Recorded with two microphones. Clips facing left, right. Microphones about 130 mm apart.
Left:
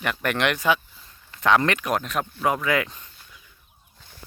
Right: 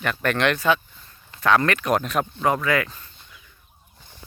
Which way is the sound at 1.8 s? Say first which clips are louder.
Right 3 dB; centre (ahead or behind).